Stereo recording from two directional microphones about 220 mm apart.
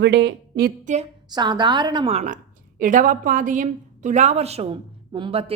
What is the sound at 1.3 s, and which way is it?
A woman's voice, 20° right (ahead or behind).